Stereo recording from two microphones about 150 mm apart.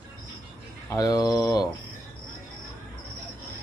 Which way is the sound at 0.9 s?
25° left (ahead or behind).